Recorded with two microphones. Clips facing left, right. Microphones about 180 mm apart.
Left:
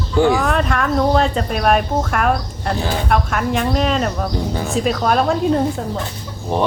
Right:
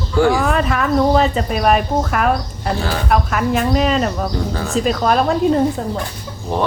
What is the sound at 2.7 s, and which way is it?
Speech, 20° left (ahead or behind).